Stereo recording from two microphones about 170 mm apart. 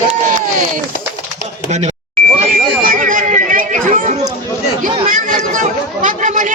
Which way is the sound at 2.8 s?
50° right (ahead or behind).